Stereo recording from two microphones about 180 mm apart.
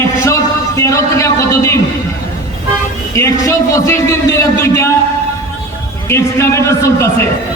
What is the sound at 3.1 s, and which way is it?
A man's voice, 15° left (ahead or behind).